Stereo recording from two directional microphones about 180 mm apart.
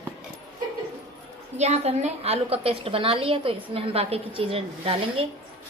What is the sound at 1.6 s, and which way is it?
A woman's voice, 40° right (ahead or behind).